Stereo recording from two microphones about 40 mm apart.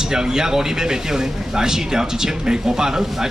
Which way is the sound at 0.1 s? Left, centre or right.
Centre.